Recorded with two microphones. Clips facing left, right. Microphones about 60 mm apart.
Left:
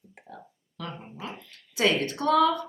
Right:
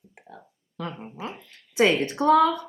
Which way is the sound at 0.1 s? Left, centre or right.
Centre.